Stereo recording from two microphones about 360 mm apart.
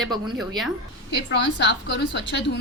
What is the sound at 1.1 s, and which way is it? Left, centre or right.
A woman's voice, left.